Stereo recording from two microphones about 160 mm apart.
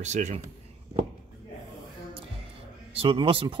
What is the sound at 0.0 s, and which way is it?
Speech, 45° right (ahead or behind).